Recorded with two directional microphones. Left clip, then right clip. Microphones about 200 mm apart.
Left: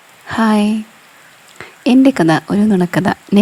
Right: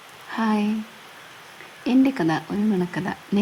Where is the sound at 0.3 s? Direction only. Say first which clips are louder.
Left 10 dB; 40° left (ahead or behind).